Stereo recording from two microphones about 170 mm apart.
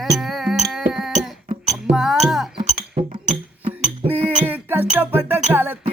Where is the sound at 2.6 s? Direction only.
35° right (ahead or behind).